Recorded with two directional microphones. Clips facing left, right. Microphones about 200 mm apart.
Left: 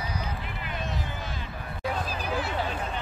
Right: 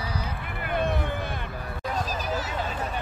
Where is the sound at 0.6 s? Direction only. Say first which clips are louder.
Right 9 dB; 55° right (ahead or behind).